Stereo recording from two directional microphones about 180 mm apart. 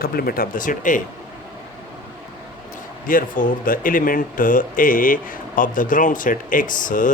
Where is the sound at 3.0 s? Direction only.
50° left (ahead or behind).